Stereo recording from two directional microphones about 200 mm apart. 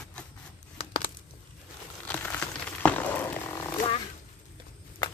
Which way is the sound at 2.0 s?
10° left (ahead or behind).